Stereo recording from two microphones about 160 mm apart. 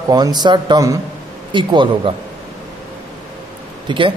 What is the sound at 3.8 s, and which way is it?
Speech, 30° right (ahead or behind).